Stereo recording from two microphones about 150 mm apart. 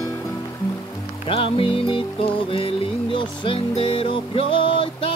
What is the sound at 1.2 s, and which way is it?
Music, 35° left (ahead or behind).